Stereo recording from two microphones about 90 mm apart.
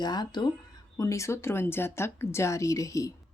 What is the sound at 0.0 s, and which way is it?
Speech, 50° left (ahead or behind).